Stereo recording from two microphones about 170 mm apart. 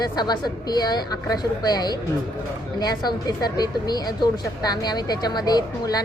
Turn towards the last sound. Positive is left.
turn(degrees=20)  # may be behind; listen again after turning